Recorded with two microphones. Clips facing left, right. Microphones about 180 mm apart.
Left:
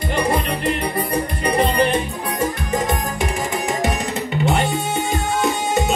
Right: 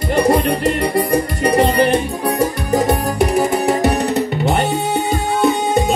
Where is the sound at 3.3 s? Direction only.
65° right (ahead or behind).